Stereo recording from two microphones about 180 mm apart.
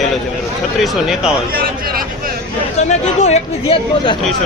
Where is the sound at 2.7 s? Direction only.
40° left (ahead or behind).